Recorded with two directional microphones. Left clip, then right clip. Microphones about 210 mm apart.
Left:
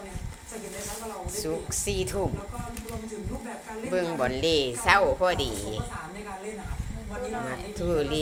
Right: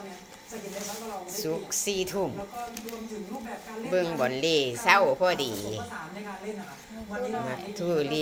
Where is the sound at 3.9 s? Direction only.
Centre (ahead or behind).